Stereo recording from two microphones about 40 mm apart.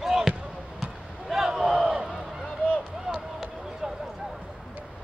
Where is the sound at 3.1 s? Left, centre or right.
Right.